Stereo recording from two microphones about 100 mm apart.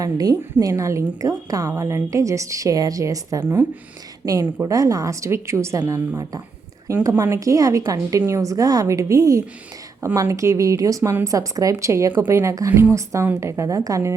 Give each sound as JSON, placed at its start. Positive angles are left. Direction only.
{"t": 0.0, "sound": "a woman's voice", "side_deg": -40}
{"t": 3.4, "sound": "a woman's voice", "side_deg": -20}
{"t": 4.7, "sound": "a woman's voice", "side_deg": -35}